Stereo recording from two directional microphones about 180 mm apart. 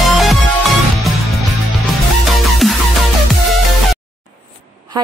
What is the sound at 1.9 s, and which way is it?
Music, centre (ahead or behind).